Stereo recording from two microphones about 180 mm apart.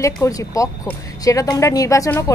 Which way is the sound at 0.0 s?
15° left (ahead or behind).